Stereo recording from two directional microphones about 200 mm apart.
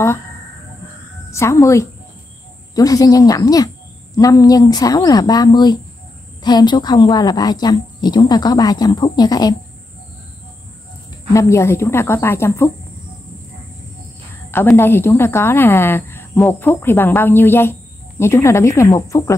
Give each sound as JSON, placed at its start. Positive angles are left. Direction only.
{"t": 1.3, "sound": "a woman's voice", "side_deg": 15}
{"t": 11.3, "sound": "a woman's voice", "side_deg": 15}
{"t": 14.5, "sound": "a woman's voice", "side_deg": 10}